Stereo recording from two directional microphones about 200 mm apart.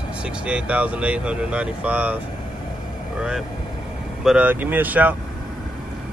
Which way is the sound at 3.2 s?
5° right (ahead or behind).